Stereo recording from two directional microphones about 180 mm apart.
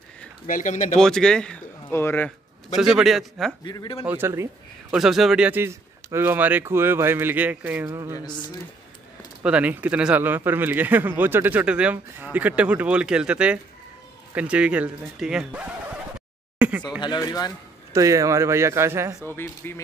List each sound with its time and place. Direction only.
0.5 s speech: 45° left (ahead or behind)
0.9 s a man's voice: 5° left (ahead or behind)
2.7 s a man's voice: centre (ahead or behind)
3.6 s speech: 25° left (ahead or behind)
4.0 s speech: 10° right (ahead or behind)
4.9 s speech: centre (ahead or behind); by 8.2 s 15° right (ahead or behind)
8.2 s speech: 25° left (ahead or behind)
9.4 s speech: 5° right (ahead or behind)
16.5 s a sound: 5° right (ahead or behind)
17.0 s speech: 25° left (ahead or behind)
17.9 s speech: 15° right (ahead or behind)
19.2 s speech: 10° left (ahead or behind)